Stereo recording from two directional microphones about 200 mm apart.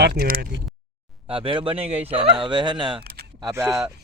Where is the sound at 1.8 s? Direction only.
5° right (ahead or behind).